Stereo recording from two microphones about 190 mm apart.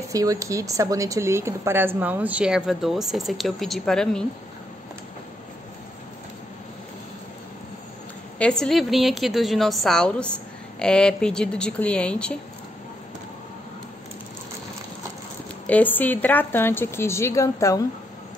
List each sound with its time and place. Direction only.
0.1 s a woman's voice: 15° right (ahead or behind); by 4.3 s 5° left (ahead or behind)
8.4 s a woman's voice: 5° left (ahead or behind)
15.6 s a woman's voice: 10° left (ahead or behind)